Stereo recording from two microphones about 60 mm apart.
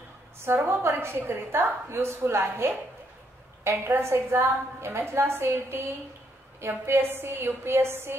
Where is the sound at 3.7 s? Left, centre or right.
Right.